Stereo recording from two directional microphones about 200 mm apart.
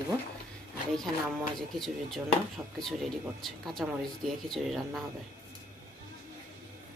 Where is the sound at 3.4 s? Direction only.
Centre (ahead or behind).